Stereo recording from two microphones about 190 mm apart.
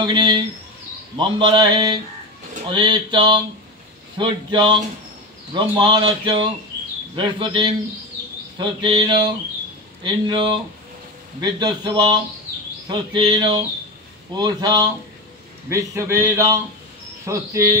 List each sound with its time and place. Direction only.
0.0 s speech: 25° right (ahead or behind)